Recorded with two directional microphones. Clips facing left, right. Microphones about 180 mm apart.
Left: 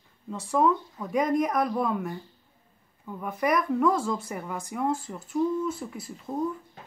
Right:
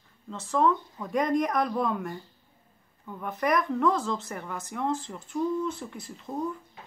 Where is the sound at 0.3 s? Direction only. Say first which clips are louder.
Left 1 dB; 10° left (ahead or behind).